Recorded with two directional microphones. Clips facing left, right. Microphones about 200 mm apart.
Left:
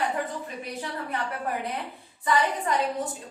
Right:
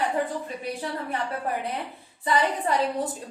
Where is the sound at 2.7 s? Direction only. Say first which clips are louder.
Right 3 dB; 30° right (ahead or behind).